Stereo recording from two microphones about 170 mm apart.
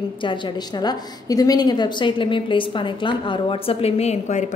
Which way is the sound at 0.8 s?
20° left (ahead or behind).